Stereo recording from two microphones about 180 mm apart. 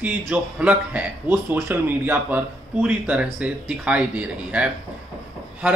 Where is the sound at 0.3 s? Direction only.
10° right (ahead or behind).